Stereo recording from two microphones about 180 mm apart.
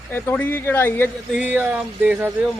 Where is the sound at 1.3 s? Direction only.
10° right (ahead or behind).